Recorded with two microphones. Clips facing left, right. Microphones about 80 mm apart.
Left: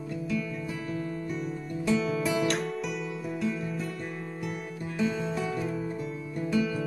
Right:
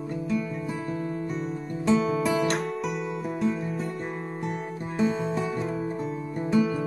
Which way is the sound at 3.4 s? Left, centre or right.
Right.